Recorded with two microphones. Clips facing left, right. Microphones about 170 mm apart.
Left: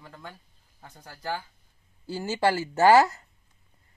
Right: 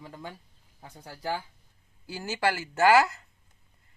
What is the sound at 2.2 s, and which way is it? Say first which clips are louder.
Speech: left 3 dB; 30° left (ahead or behind).